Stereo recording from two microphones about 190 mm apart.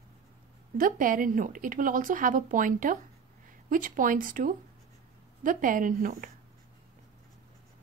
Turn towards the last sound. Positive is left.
turn(degrees=-45)  # may be behind; listen again after turning